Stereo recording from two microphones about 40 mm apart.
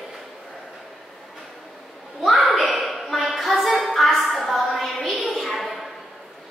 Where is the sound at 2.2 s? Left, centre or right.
Centre.